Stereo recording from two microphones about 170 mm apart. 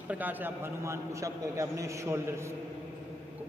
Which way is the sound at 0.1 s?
10° right (ahead or behind).